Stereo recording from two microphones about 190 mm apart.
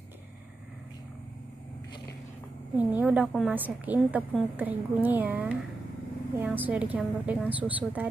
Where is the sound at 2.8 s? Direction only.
5° right (ahead or behind).